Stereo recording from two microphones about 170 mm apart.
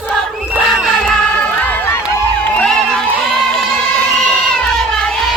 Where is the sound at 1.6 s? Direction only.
10° left (ahead or behind).